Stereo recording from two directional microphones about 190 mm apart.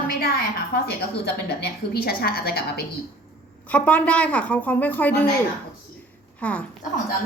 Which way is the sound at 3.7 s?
5° left (ahead or behind).